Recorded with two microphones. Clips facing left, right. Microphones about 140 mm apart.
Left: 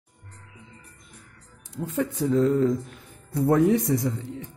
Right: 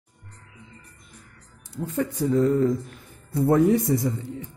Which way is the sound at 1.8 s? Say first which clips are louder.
Right 1 dB; centre (ahead or behind).